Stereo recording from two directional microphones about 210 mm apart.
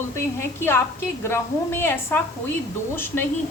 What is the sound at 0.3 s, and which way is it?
A woman's voice, 10° left (ahead or behind).